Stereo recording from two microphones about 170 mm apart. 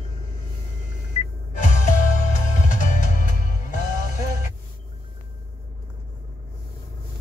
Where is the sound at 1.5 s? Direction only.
50° left (ahead or behind).